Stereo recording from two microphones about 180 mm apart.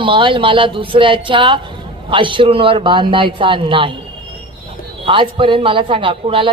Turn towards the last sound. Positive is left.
turn(degrees=-30)  # may be behind; listen again after turning